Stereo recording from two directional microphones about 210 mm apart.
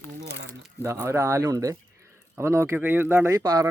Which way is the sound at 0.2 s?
55° right (ahead or behind).